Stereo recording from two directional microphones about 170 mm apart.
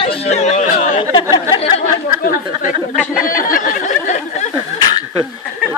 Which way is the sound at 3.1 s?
55° left (ahead or behind).